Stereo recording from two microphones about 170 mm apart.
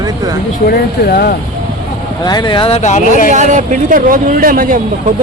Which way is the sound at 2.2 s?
25° left (ahead or behind).